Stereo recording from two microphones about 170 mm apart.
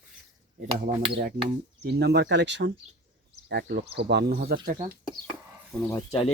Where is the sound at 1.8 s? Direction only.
75° right (ahead or behind).